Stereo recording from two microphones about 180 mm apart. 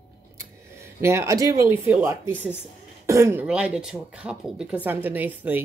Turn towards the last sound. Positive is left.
turn(degrees=-10)  # may be behind; listen again after turning